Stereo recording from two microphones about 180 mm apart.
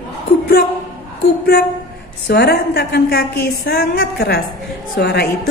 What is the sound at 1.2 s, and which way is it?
A woman's voice, 60° left (ahead or behind).